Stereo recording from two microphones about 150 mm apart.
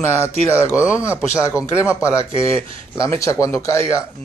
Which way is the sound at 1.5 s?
10° right (ahead or behind).